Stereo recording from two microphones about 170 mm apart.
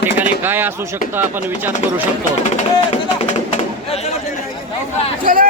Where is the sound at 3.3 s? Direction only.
40° left (ahead or behind).